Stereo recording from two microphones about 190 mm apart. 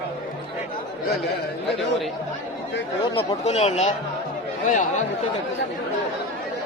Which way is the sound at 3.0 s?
25° left (ahead or behind).